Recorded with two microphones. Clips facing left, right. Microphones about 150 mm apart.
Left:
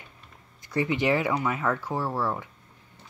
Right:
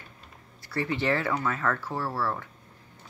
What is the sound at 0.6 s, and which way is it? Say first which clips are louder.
Speech: left 3 dB; 15° left (ahead or behind).